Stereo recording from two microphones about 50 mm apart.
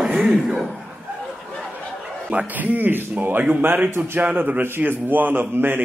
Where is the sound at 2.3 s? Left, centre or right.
Right.